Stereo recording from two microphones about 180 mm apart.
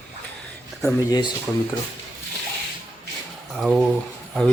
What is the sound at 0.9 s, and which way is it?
Speech, 20° left (ahead or behind).